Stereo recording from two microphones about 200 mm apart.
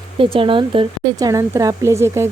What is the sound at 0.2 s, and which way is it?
A woman's voice, 25° right (ahead or behind).